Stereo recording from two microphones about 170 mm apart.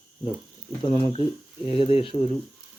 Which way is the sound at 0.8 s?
35° left (ahead or behind).